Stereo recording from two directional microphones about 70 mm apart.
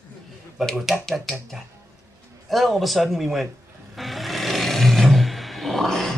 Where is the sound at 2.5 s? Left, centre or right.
Centre.